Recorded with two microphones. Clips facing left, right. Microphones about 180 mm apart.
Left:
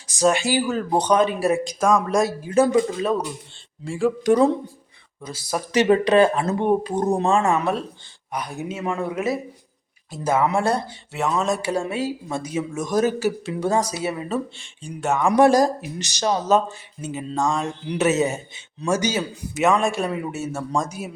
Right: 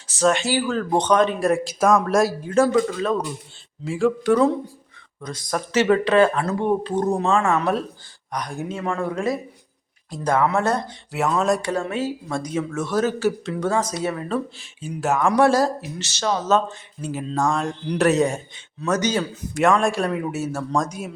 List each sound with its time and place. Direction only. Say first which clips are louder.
0.1 s speech: even; 10° left (ahead or behind)
2.5 s speech: left 2 dB; 15° left (ahead or behind)
3.8 s speech: right 1 dB; centre (ahead or behind)
4.2 s speech: left 2 dB; 15° left (ahead or behind)
5.2 s speech: right 1 dB; 5° left (ahead or behind)
7.6 s speech: right 1 dB; centre (ahead or behind)
8.8 s speech: even; 15° left (ahead or behind)
11.1 s speech: right 2 dB; centre (ahead or behind)
11.7 s speech: even; 10° left (ahead or behind)
15.3 s speech: left 3 dB; 15° left (ahead or behind)
17.1 s speech: right 1 dB; centre (ahead or behind)